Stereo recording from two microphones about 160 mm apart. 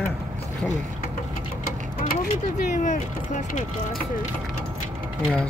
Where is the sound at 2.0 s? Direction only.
50° left (ahead or behind).